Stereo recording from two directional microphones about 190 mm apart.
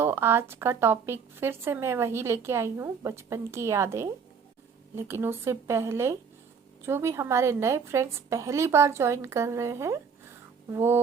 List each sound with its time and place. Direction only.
0.0 s speech: 10° right (ahead or behind)